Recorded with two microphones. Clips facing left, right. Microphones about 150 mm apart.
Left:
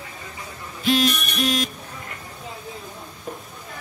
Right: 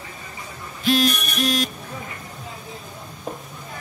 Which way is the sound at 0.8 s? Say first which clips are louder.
Right 1 dB; 40° right (ahead or behind).